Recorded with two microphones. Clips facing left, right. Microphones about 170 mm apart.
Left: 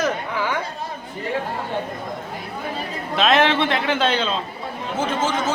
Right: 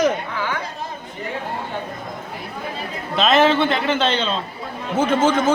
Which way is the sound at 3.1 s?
Centre (ahead or behind).